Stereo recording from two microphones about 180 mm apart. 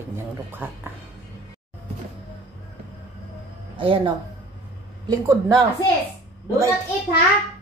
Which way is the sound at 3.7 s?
30° right (ahead or behind).